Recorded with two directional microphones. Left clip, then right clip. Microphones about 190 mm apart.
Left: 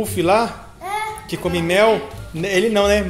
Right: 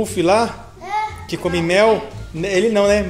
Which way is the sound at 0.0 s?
10° right (ahead or behind).